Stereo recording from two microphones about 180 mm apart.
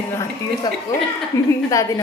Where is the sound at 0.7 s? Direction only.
20° left (ahead or behind).